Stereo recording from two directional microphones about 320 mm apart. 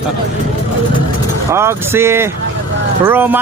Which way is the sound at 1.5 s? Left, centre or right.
Centre.